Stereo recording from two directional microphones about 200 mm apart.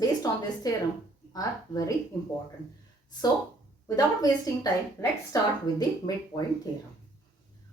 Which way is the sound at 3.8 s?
20° left (ahead or behind).